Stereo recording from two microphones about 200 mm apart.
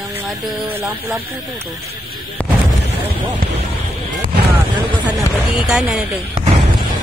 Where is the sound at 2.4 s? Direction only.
10° left (ahead or behind).